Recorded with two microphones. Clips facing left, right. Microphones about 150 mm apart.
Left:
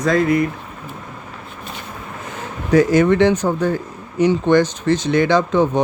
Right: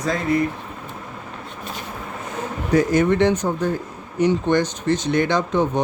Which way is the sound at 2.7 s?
90° left.